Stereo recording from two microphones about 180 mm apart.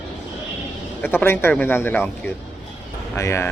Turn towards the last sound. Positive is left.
turn(degrees=15)  # may be behind; listen again after turning